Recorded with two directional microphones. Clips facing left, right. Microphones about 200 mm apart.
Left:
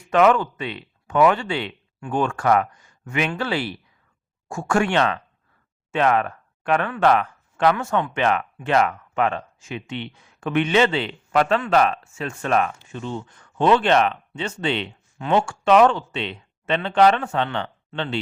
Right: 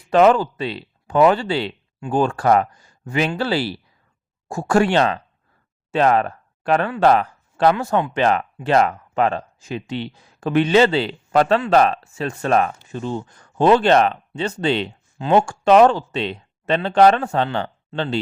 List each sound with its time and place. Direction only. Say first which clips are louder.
0.1 s speech: right 3 dB; 35° right (ahead or behind)